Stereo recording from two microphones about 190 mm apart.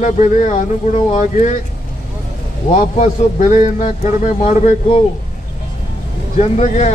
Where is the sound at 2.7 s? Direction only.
45° left (ahead or behind).